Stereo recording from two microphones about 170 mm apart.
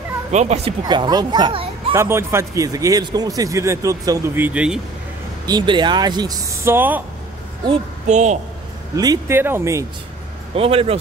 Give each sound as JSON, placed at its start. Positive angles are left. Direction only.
{"t": 0.3, "sound": "speech", "side_deg": -40}
{"t": 0.8, "sound": "speech", "side_deg": -25}
{"t": 2.0, "sound": "speech", "side_deg": -15}
{"t": 5.5, "sound": "speech", "side_deg": -25}
{"t": 8.1, "sound": "a woman's voice", "side_deg": -45}
{"t": 8.9, "sound": "speech", "side_deg": -20}
{"t": 10.5, "sound": "speech", "side_deg": -35}